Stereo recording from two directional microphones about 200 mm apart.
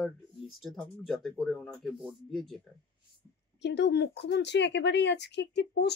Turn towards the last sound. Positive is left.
turn(degrees=60)  # may be behind; listen again after turning